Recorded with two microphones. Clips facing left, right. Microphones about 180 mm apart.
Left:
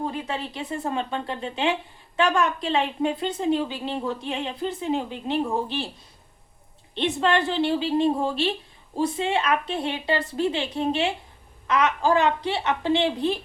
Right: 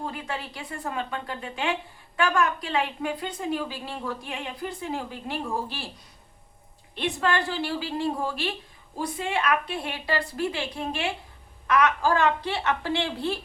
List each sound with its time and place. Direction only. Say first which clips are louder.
0.0 s a woman's voice: left 4 dB; 20° left (ahead or behind)
6.9 s a woman's voice: left 4 dB; 25° left (ahead or behind)